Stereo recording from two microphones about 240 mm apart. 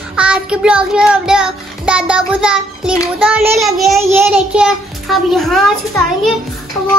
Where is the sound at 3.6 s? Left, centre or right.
Centre.